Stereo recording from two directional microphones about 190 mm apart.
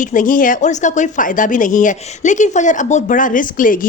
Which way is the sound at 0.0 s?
45° left (ahead or behind).